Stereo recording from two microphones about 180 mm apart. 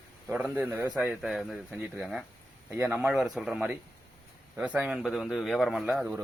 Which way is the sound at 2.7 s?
10° right (ahead or behind).